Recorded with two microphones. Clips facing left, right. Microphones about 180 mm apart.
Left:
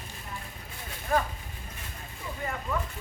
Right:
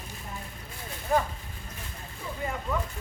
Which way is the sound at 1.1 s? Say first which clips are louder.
Right 1 dB; 20° right (ahead or behind).